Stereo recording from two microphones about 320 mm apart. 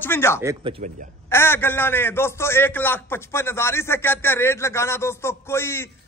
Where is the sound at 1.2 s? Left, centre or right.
Centre.